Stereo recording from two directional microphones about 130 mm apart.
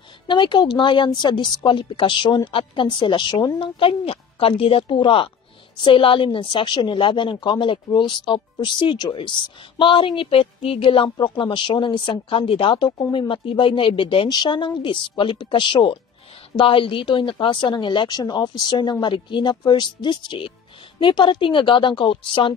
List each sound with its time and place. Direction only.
0.3 s a woman's voice: 35° left (ahead or behind)